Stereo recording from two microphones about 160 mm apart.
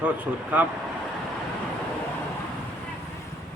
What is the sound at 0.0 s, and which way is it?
Speech, 10° right (ahead or behind).